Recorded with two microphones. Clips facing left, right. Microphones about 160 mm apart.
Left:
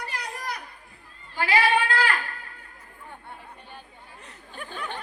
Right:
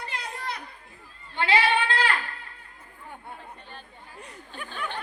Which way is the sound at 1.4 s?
25° right (ahead or behind).